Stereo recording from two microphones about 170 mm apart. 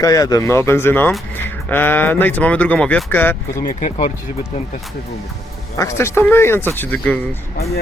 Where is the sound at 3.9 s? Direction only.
45° left (ahead or behind).